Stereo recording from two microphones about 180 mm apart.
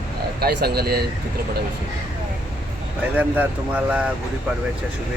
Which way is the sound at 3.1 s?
10° right (ahead or behind).